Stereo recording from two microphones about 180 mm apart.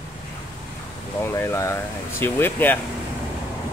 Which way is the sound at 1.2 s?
15° left (ahead or behind).